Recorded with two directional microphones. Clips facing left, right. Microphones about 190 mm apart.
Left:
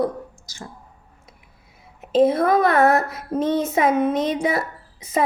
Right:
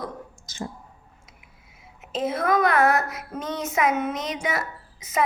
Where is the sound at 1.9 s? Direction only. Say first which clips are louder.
Left 10 dB; 35° left (ahead or behind).